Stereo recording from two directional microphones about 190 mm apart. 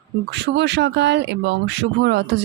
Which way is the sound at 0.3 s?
65° right (ahead or behind).